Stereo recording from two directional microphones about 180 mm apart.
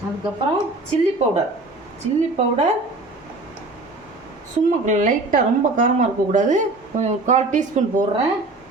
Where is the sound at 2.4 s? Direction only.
35° right (ahead or behind).